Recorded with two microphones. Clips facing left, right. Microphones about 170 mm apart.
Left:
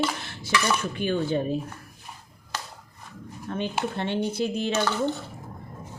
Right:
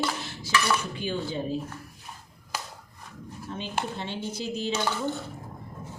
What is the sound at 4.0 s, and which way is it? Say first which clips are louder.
Speech: left 7 dB; 60° left (ahead or behind).